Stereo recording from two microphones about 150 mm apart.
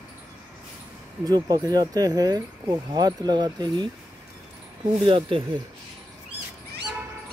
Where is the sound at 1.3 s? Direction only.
25° right (ahead or behind).